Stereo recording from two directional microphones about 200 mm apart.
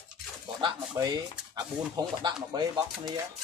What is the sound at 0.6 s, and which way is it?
Speech, 20° right (ahead or behind).